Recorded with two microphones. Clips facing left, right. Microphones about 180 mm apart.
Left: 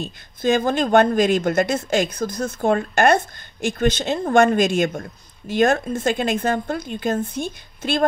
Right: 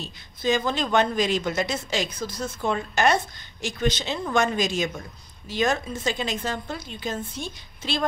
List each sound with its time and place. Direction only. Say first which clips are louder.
0.0 s a woman's voice: left 5 dB; 50° left (ahead or behind)